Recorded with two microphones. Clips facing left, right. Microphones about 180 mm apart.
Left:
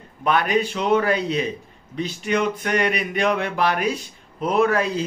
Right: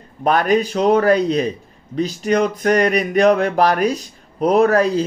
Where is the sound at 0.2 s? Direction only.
40° right (ahead or behind).